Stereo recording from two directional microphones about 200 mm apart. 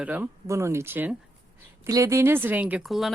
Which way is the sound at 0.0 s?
10° right (ahead or behind).